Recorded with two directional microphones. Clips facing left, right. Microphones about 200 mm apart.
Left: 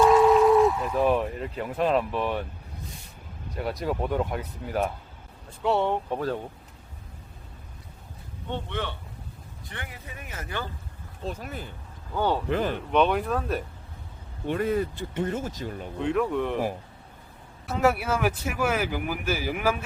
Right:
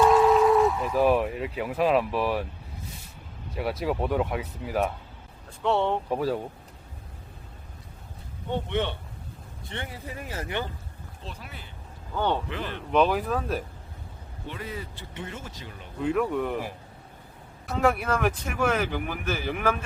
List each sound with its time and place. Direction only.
0.0 s speech: centre (ahead or behind)
3.5 s speech: 5° right (ahead or behind)
5.6 s speech: 10° left (ahead or behind)
6.1 s speech: 5° right (ahead or behind)
8.5 s speech: 20° right (ahead or behind)
11.3 s speech: 45° left (ahead or behind)
12.1 s speech: 5° left (ahead or behind)
12.5 s speech: 45° left (ahead or behind)
12.7 s speech: centre (ahead or behind)
14.4 s speech: 55° left (ahead or behind)
16.0 s speech: centre (ahead or behind)
17.7 s speech: 5° left (ahead or behind)